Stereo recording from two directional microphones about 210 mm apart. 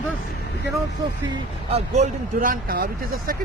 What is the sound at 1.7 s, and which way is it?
Speech, 35° right (ahead or behind).